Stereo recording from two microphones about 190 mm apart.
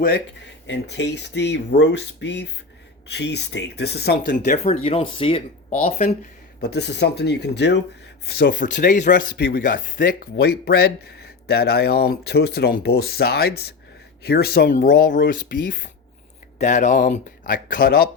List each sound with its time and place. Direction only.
0.7 s speech: 65° left (ahead or behind); by 6.1 s 35° left (ahead or behind)
6.6 s speech: 60° left (ahead or behind); by 9.2 s 40° left (ahead or behind)
9.3 s speech: 55° left (ahead or behind)
16.6 s speech: 40° left (ahead or behind)